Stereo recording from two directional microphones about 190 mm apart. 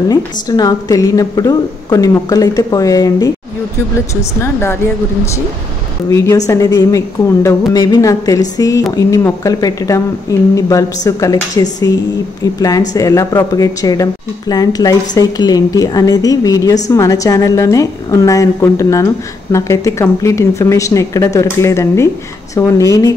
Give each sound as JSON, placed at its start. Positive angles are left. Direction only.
{"t": 0.1, "sound": "a woman's voice", "side_deg": 20}
{"t": 4.4, "sound": "a woman's voice", "side_deg": 15}
{"t": 6.0, "sound": "a woman's voice", "side_deg": 20}